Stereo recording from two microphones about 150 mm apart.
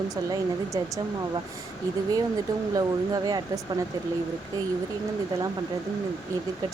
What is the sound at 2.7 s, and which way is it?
Speech, 25° right (ahead or behind).